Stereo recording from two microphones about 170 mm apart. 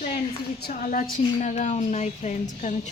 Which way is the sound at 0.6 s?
50° left (ahead or behind).